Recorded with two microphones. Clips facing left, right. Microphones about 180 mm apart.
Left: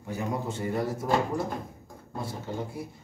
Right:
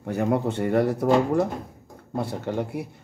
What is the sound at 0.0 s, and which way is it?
Speech, 65° right (ahead or behind).